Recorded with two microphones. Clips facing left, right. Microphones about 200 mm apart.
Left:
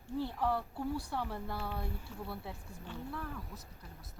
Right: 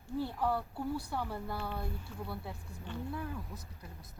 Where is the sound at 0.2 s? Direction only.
5° right (ahead or behind).